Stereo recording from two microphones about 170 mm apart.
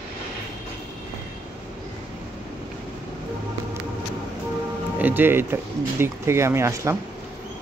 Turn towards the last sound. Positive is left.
turn(degrees=-15)  # may be behind; listen again after turning